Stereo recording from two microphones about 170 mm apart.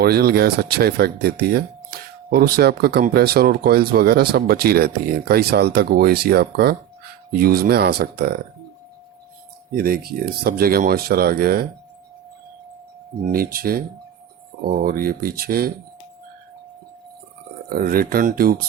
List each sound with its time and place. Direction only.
0.0 s speech: 65° right (ahead or behind)
9.7 s speech: 60° right (ahead or behind)
13.2 s speech: 60° right (ahead or behind)
17.7 s speech: 60° right (ahead or behind)